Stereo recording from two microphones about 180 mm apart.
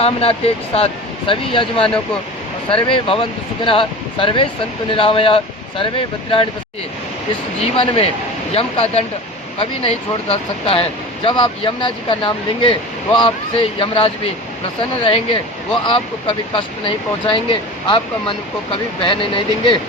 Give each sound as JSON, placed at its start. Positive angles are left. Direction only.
{"t": 0.0, "sound": "speech", "side_deg": 35}
{"t": 7.6, "sound": "speech", "side_deg": 35}